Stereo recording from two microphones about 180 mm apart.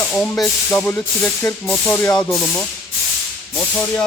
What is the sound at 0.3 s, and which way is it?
Speech, 5° left (ahead or behind).